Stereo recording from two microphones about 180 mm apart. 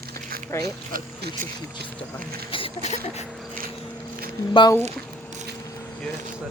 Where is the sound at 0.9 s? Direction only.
50° right (ahead or behind).